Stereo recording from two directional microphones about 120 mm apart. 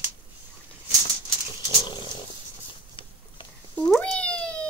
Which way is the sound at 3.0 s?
45° left (ahead or behind).